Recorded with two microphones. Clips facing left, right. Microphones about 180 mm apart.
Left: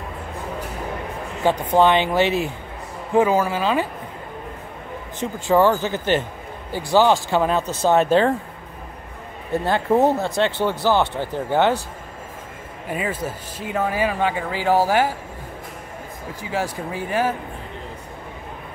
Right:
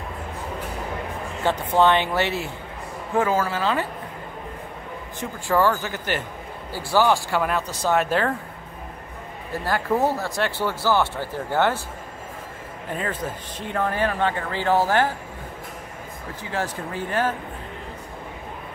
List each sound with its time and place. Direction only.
1.4 s speech: 15° left (ahead or behind)
5.2 s speech: 20° left (ahead or behind)
9.5 s speech: 25° left (ahead or behind)
12.9 s speech: 10° left (ahead or behind)
16.5 s speech: 10° left (ahead or behind)